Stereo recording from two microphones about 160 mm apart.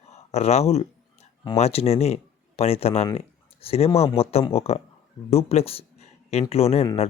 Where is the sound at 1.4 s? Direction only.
40° left (ahead or behind).